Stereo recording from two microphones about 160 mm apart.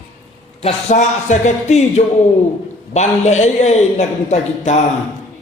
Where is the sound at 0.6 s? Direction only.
45° left (ahead or behind).